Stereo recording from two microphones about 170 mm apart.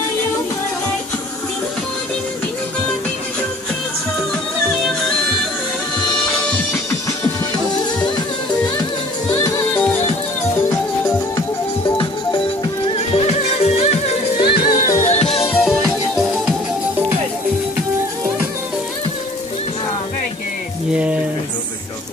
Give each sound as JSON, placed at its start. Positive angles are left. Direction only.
{"t": 9.3, "sound": "music", "side_deg": 20}
{"t": 12.9, "sound": "music", "side_deg": 35}
{"t": 14.6, "sound": "music", "side_deg": 55}
{"t": 15.6, "sound": "music", "side_deg": 0}
{"t": 20.9, "sound": "a sound", "side_deg": -10}